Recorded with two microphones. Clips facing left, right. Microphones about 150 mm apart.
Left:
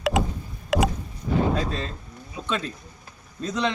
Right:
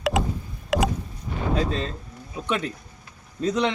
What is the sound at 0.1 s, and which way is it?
Rowboat, centre (ahead or behind).